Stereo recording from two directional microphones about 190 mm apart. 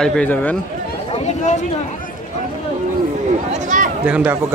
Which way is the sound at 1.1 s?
35° left (ahead or behind).